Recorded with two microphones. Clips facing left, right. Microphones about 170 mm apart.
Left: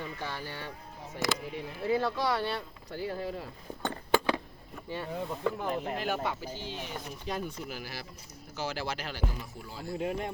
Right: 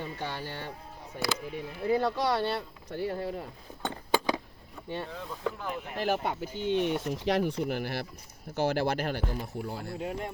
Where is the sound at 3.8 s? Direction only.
10° right (ahead or behind).